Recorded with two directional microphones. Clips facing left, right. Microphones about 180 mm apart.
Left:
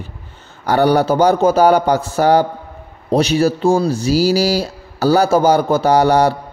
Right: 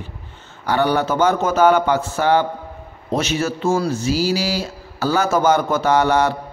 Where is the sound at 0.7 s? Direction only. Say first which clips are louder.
Left 5 dB; 40° left (ahead or behind).